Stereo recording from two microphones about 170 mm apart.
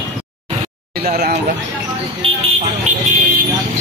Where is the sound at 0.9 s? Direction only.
65° right (ahead or behind).